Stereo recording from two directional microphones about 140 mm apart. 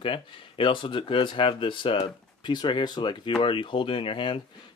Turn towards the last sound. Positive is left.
turn(degrees=35)  # may be behind; listen again after turning